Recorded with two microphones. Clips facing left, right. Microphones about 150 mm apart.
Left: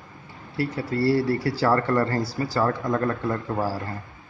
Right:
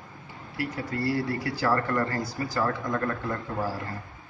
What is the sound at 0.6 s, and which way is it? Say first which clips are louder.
Speech: left 6 dB; 30° left (ahead or behind).